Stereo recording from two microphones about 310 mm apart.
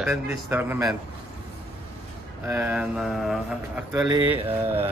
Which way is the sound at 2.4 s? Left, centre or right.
Centre.